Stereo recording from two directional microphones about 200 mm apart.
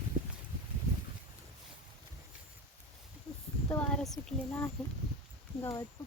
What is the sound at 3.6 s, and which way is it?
A woman's voice, 5° left (ahead or behind).